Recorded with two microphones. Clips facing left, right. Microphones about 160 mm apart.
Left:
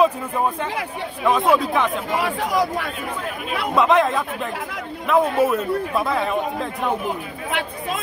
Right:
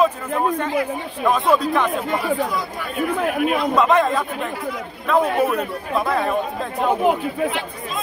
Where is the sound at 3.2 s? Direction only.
60° right (ahead or behind).